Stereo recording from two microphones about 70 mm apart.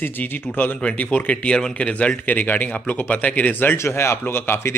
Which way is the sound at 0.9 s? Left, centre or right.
Centre.